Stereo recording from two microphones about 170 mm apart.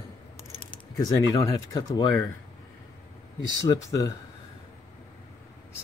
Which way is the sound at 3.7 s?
20° left (ahead or behind).